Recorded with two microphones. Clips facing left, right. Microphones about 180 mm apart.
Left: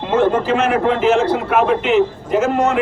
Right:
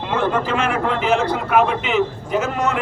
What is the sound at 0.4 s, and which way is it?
A man's voice, centre (ahead or behind).